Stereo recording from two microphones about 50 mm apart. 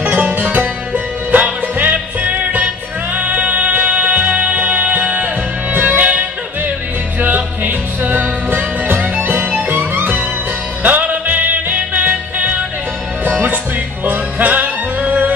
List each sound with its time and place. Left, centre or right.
0.0 s music: right